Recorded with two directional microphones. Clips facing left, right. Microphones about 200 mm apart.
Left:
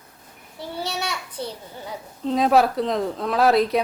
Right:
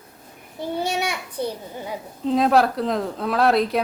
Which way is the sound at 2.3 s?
Centre (ahead or behind).